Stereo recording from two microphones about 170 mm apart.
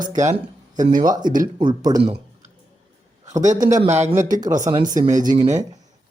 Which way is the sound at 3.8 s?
40° right (ahead or behind).